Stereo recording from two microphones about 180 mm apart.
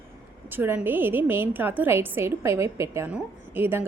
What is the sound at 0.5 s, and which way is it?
A woman's voice, 10° right (ahead or behind).